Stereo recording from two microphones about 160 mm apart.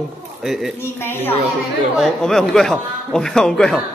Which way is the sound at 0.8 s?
15° left (ahead or behind).